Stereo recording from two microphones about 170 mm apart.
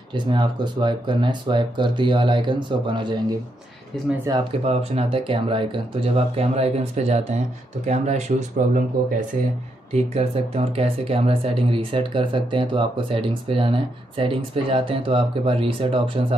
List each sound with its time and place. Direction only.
0.1 s speech: 30° right (ahead or behind)
4.3 s speech: 20° right (ahead or behind)
4.6 s speech: 35° right (ahead or behind)
9.9 s speech: 40° right (ahead or behind)